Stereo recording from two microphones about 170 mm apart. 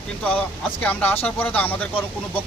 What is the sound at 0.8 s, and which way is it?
Speech, 10° left (ahead or behind).